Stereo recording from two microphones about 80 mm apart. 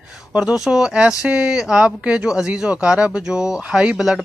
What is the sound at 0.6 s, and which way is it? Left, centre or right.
Speech, centre.